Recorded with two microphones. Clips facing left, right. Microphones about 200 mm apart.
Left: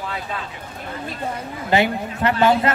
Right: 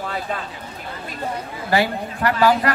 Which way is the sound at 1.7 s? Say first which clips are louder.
Left 1 dB; 20° left (ahead or behind).